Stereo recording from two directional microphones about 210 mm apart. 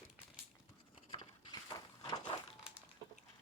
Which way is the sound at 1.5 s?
15° left (ahead or behind).